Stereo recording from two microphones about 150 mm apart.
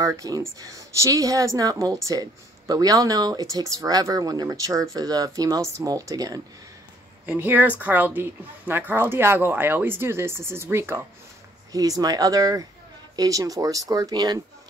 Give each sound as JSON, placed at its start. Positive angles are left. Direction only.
{"t": 0.0, "sound": "speech", "side_deg": -25}
{"t": 7.2, "sound": "speech", "side_deg": -10}